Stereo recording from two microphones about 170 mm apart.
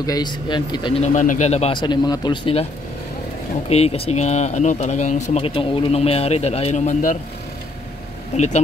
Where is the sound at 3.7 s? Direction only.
35° left (ahead or behind).